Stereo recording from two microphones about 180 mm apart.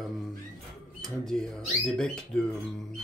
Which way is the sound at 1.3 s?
5° left (ahead or behind).